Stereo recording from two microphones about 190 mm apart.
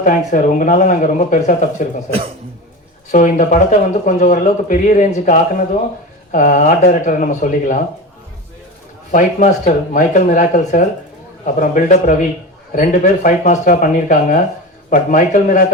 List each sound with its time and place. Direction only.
0.0 s speech: 40° left (ahead or behind)
3.1 s speech: 40° left (ahead or behind)
9.1 s speech: 45° left (ahead or behind)